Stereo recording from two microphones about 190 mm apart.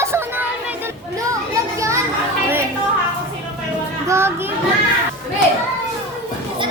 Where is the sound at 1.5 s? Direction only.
15° right (ahead or behind).